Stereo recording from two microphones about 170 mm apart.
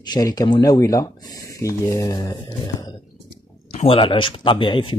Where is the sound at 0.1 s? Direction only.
20° left (ahead or behind).